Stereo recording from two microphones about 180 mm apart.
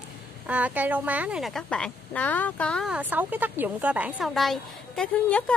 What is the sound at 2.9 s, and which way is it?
Speech, 10° right (ahead or behind).